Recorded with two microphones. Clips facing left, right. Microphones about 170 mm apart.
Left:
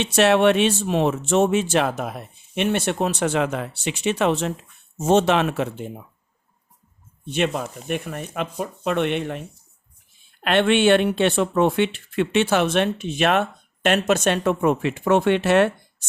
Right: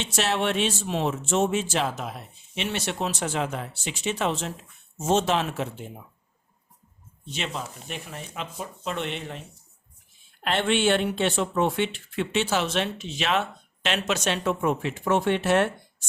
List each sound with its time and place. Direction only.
0.0 s speech: 60° left (ahead or behind)
7.3 s speech: 55° left (ahead or behind)
10.4 s speech: 65° left (ahead or behind)